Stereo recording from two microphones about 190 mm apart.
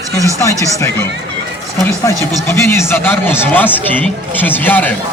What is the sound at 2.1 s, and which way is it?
Speech, 15° left (ahead or behind).